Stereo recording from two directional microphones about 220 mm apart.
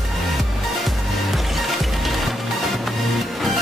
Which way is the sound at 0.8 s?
Centre (ahead or behind).